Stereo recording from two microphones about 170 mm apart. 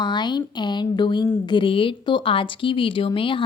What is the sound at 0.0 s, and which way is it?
Speech, 25° left (ahead or behind).